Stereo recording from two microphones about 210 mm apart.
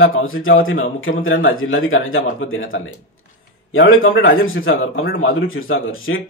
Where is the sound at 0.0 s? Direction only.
75° left (ahead or behind).